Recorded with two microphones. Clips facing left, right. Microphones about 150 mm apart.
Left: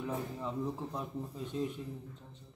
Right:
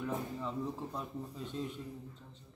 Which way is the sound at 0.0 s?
10° left (ahead or behind).